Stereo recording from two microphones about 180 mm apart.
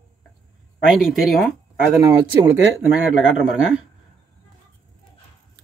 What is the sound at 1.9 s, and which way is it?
Speech, 25° right (ahead or behind).